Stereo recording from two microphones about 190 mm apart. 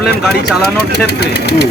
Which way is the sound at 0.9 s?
60° left (ahead or behind).